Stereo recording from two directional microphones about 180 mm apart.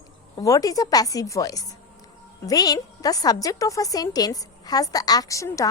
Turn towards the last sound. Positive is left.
turn(degrees=15)  # may be behind; listen again after turning